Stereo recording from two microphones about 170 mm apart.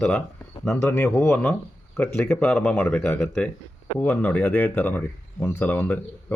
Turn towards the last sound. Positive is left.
turn(degrees=10)  # may be behind; listen again after turning